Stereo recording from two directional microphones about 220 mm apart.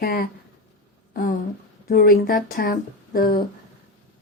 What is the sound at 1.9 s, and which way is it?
Speech, 40° left (ahead or behind).